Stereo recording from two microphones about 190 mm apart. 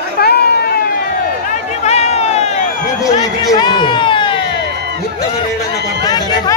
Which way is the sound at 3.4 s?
20° left (ahead or behind).